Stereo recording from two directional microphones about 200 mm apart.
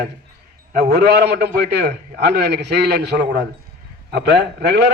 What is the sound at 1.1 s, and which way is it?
A man's voice, 55° right (ahead or behind).